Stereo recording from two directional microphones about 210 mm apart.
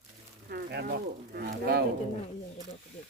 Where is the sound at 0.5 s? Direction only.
50° right (ahead or behind).